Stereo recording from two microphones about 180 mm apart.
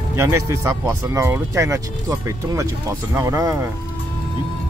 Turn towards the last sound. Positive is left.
turn(degrees=-20)  # may be behind; listen again after turning